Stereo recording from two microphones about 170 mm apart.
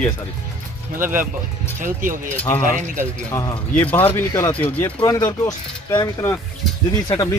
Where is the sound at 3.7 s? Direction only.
10° left (ahead or behind).